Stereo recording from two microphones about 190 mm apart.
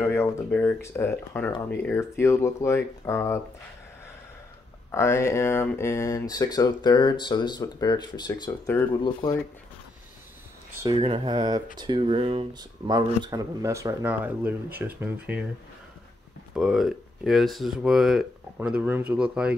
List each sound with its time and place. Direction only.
0.0 s speech: 15° left (ahead or behind)
4.9 s speech: 15° left (ahead or behind)
11.0 s speech: 25° right (ahead or behind); by 15.4 s 10° right (ahead or behind)
16.5 s speech: centre (ahead or behind)